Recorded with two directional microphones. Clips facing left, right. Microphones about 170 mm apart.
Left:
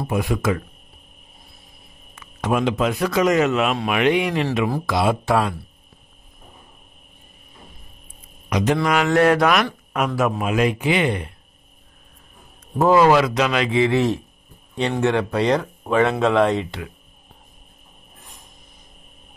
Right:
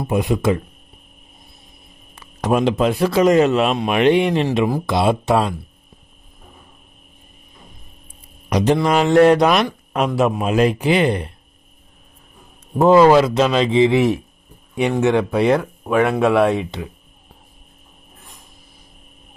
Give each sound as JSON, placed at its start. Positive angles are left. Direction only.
{"t": 0.0, "sound": "speech", "side_deg": -20}
{"t": 2.1, "sound": "a man's voice", "side_deg": -35}
{"t": 4.6, "sound": "speech", "side_deg": -20}
{"t": 8.5, "sound": "a man's voice", "side_deg": -35}
{"t": 13.0, "sound": "speech", "side_deg": -25}